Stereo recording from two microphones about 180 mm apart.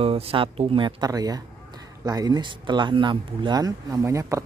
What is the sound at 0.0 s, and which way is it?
Speech, 30° right (ahead or behind).